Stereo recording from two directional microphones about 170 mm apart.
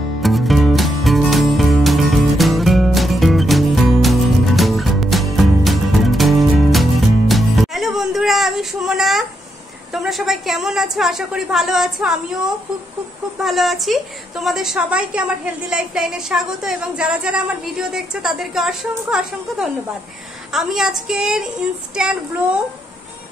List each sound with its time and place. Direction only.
0.2 s music: centre (ahead or behind)
9.9 s a woman's voice: centre (ahead or behind)